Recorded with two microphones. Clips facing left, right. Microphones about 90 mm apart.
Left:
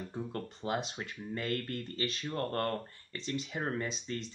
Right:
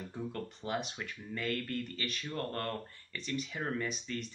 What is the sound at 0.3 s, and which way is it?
Speech, 35° left (ahead or behind).